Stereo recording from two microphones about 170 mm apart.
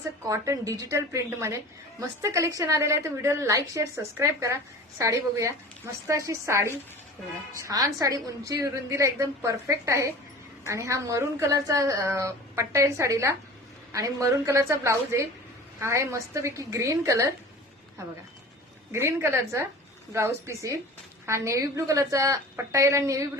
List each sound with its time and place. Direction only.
0.3 s a woman's voice: 20° right (ahead or behind)
18.9 s a woman's voice: 15° right (ahead or behind)